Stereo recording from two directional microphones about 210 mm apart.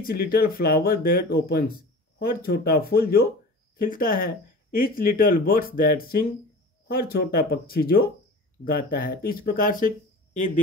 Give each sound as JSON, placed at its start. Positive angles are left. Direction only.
{"t": 0.0, "sound": "speech", "side_deg": 45}